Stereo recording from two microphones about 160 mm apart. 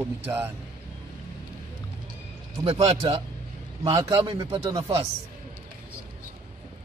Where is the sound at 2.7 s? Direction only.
35° right (ahead or behind).